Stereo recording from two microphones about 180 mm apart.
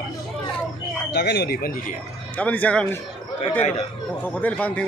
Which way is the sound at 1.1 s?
65° left (ahead or behind).